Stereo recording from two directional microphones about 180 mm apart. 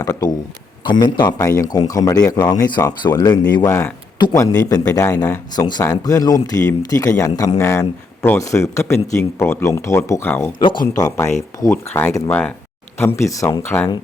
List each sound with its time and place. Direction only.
0.0 s a sound: 20° left (ahead or behind)
0.9 s a man's voice: 25° left (ahead or behind)
10.6 s a man's voice: 25° left (ahead or behind)